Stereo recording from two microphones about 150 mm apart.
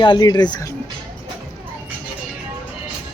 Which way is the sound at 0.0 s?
30° left (ahead or behind).